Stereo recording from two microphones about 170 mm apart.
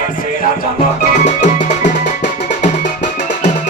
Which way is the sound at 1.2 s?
45° left (ahead or behind).